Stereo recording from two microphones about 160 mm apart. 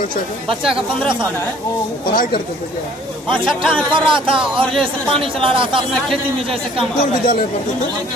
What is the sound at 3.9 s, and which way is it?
Speech, 30° right (ahead or behind).